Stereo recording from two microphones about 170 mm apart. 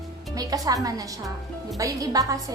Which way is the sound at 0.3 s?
20° right (ahead or behind).